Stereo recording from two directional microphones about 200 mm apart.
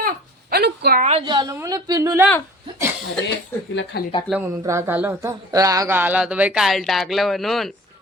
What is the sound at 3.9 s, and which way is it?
Speech, 55° left (ahead or behind).